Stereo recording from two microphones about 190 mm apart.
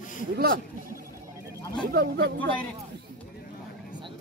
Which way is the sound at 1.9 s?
55° right (ahead or behind).